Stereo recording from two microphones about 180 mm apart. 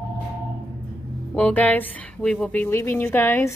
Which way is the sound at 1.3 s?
10° left (ahead or behind).